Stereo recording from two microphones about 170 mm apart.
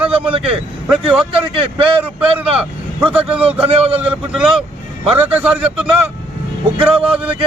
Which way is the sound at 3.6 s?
35° right (ahead or behind).